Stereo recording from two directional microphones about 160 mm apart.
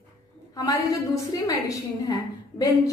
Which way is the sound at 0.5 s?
20° left (ahead or behind).